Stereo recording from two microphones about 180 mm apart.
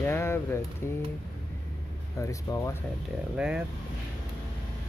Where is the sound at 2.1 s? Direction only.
20° left (ahead or behind).